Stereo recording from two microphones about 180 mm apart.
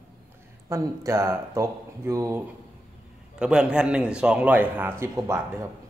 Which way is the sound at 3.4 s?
5° right (ahead or behind).